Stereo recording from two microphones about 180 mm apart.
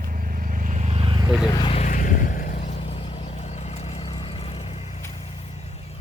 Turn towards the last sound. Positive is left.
turn(degrees=35)  # may be behind; listen again after turning